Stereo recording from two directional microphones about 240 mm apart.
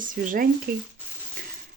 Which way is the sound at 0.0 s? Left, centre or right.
Right.